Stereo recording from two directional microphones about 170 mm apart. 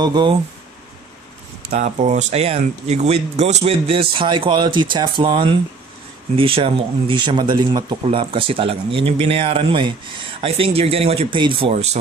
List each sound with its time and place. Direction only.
0.0 s speech: 25° right (ahead or behind)
1.7 s speech: 40° right (ahead or behind)